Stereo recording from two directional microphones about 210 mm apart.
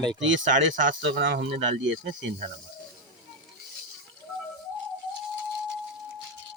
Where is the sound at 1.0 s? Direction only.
55° right (ahead or behind).